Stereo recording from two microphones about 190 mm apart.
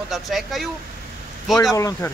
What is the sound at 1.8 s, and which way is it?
Speech, 15° left (ahead or behind).